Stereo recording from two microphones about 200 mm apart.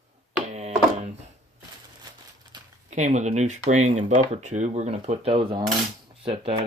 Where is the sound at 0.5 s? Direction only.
35° right (ahead or behind).